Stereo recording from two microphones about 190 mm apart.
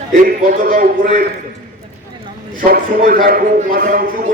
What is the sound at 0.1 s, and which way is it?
A man's voice, 45° right (ahead or behind).